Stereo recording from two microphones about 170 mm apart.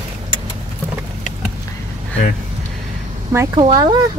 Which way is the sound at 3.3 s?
20° right (ahead or behind).